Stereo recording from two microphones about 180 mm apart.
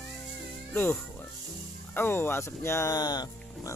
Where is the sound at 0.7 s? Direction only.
10° left (ahead or behind).